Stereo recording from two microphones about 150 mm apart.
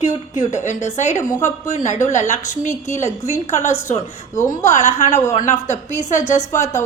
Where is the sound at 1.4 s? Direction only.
55° left (ahead or behind).